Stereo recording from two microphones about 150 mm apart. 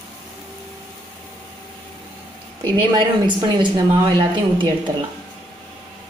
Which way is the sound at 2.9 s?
30° right (ahead or behind).